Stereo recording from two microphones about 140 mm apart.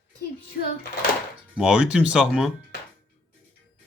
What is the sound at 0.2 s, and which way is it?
Music, 90° left.